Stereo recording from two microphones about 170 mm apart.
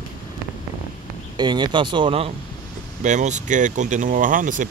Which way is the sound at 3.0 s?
45° right (ahead or behind).